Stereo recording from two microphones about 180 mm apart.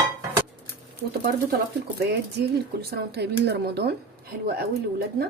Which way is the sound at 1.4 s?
60° right (ahead or behind).